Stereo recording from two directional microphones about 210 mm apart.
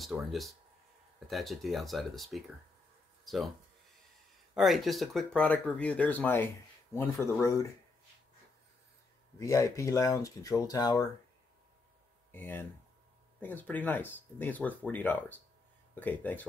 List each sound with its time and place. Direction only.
0.0 s speech: centre (ahead or behind)
4.6 s speech: centre (ahead or behind)
9.4 s speech: 15° left (ahead or behind)
12.3 s speech: 10° left (ahead or behind)